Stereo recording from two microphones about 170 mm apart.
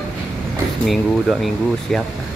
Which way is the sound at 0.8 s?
Centre (ahead or behind).